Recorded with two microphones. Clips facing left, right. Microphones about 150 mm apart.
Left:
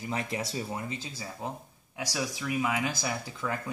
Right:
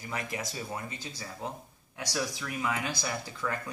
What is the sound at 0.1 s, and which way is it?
Speech, 30° left (ahead or behind).